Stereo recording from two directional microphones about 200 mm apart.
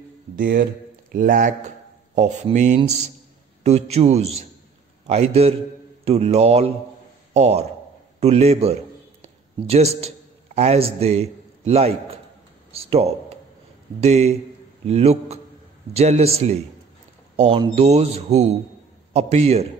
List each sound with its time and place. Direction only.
0.4 s a man's voice: 45° right (ahead or behind)